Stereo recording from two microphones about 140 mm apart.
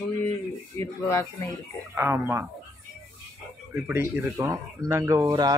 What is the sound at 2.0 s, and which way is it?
Speech, 15° right (ahead or behind).